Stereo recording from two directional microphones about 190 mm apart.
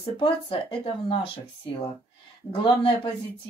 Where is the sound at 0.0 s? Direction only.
30° left (ahead or behind).